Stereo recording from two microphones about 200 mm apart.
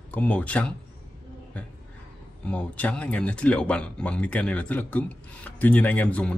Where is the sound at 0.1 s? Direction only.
5° left (ahead or behind).